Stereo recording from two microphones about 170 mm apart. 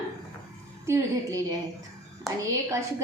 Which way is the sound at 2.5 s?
20° right (ahead or behind).